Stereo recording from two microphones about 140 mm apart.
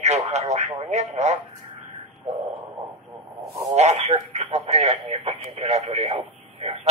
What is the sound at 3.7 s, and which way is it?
Speech, 50° right (ahead or behind).